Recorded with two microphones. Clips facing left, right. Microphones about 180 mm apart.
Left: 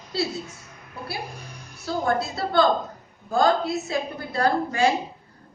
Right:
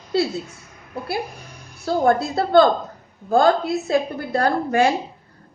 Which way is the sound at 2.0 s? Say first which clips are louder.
Right 6 dB; 55° right (ahead or behind).